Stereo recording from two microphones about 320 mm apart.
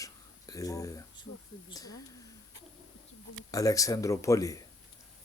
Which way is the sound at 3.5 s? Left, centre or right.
Centre.